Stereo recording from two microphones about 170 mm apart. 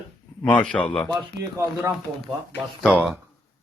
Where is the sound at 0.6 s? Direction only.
5° left (ahead or behind).